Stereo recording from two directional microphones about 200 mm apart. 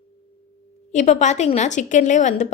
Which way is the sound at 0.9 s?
35° left (ahead or behind).